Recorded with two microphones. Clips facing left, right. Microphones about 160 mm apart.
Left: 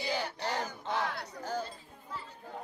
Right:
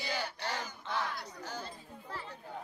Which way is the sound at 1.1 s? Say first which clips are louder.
Left 5 dB; 55° left (ahead or behind).